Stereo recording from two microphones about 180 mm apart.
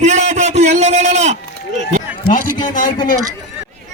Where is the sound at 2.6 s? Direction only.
45° left (ahead or behind).